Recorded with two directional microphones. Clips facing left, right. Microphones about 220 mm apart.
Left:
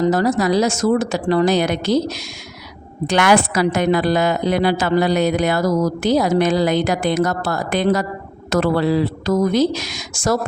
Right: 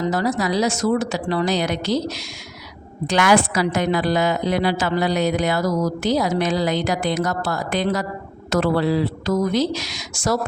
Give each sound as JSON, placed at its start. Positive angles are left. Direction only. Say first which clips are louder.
{"t": 0.0, "sound": "a woman's voice", "louder": "left 5 dB", "side_deg": 45}
{"t": 3.1, "sound": "a woman's voice", "louder": "left 2 dB", "side_deg": 60}